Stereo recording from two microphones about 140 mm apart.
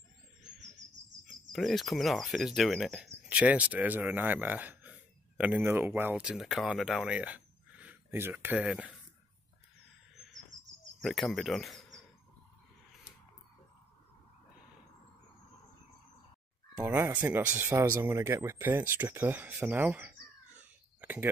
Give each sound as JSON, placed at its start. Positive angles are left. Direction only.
{"t": 1.3, "sound": "speech", "side_deg": 0}
{"t": 11.0, "sound": "speech", "side_deg": 0}
{"t": 16.8, "sound": "speech", "side_deg": -15}
{"t": 21.0, "sound": "a sound", "side_deg": -10}